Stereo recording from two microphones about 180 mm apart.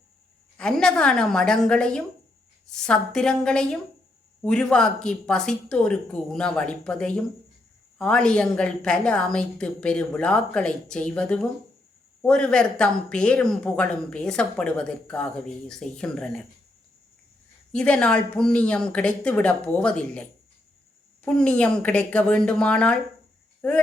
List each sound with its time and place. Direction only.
0.5 s speech: 5° left (ahead or behind)
17.7 s speech: 5° left (ahead or behind)
21.2 s speech: 5° left (ahead or behind)